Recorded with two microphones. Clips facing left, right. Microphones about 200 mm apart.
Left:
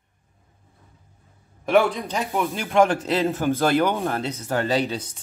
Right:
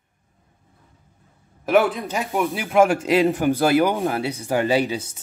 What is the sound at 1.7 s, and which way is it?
A man's voice, 5° right (ahead or behind).